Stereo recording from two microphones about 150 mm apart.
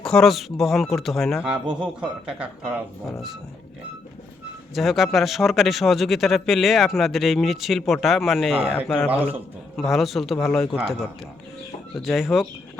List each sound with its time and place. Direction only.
0.0 s speech: 5° left (ahead or behind)
4.7 s speech: centre (ahead or behind)
9.0 s speech: 10° right (ahead or behind)
9.7 s speech: centre (ahead or behind)
12.0 s speech: centre (ahead or behind)